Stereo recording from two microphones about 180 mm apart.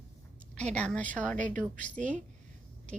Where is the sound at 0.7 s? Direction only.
5° left (ahead or behind).